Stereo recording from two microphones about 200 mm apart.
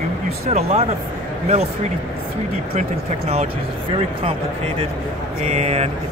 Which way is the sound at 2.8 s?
35° right (ahead or behind).